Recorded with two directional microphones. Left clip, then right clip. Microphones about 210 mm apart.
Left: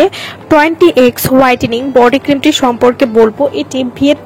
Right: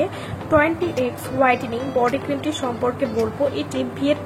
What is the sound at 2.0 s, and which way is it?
Speech, 40° left (ahead or behind).